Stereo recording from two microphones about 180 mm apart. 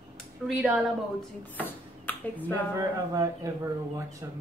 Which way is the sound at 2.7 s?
20° right (ahead or behind).